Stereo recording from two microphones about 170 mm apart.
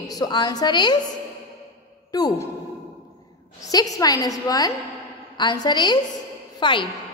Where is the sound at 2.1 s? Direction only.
20° left (ahead or behind).